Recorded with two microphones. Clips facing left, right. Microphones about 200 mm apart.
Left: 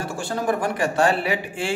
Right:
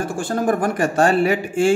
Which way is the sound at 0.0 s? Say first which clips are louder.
Right 5 dB; 50° right (ahead or behind).